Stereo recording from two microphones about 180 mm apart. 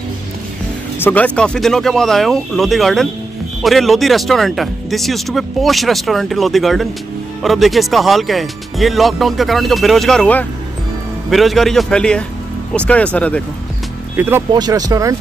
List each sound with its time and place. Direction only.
0.9 s speech: 10° left (ahead or behind)
14.1 s speech: 10° right (ahead or behind)
14.5 s speech: 20° right (ahead or behind)